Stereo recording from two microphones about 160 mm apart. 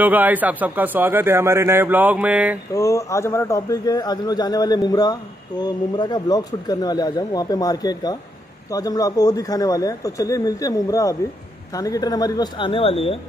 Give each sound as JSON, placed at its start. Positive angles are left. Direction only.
{"t": 0.0, "sound": "speech", "side_deg": -10}
{"t": 2.7, "sound": "a man's voice", "side_deg": 20}